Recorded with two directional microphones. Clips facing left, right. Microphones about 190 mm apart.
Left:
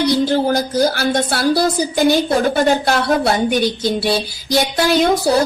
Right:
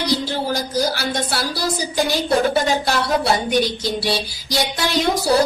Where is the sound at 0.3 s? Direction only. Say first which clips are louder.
Left 7 dB; 55° left (ahead or behind).